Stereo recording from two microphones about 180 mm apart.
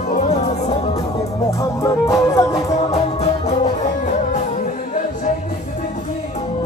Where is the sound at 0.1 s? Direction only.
35° left (ahead or behind).